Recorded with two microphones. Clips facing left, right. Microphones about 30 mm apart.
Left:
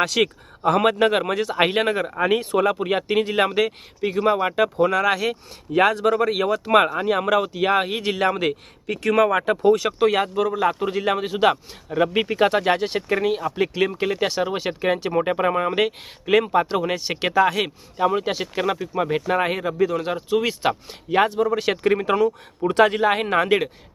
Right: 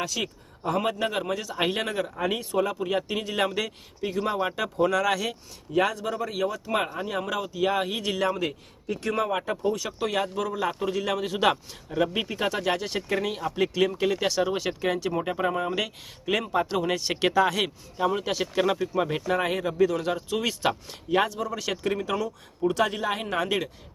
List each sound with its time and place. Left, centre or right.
0.0 s speech: left
5.7 s speech: left
8.3 s speech: left
10.0 s speech: left
10.3 s speech: left
11.3 s speech: centre
11.5 s speech: left